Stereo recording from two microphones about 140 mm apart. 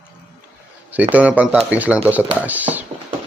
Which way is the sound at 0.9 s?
10° right (ahead or behind).